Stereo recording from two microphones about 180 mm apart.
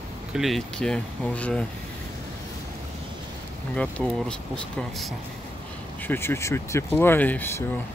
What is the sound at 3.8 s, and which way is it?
Speech, 5° left (ahead or behind).